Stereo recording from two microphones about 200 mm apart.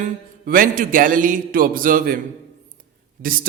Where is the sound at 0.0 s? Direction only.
45° right (ahead or behind).